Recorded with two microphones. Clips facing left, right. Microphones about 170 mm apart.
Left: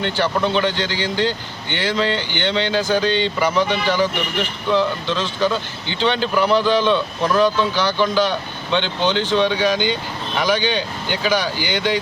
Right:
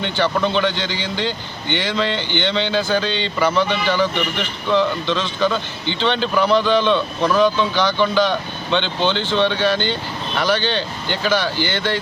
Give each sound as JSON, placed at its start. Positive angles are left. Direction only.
{"t": 0.0, "sound": "speech", "side_deg": 5}